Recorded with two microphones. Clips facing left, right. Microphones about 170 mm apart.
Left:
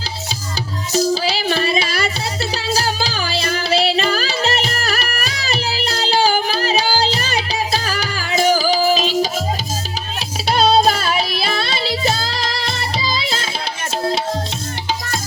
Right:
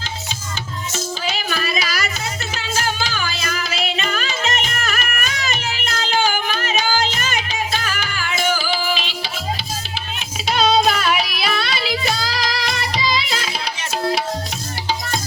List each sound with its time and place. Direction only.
0.9 s child singing: 35° left (ahead or behind)
2.6 s music: 35° left (ahead or behind)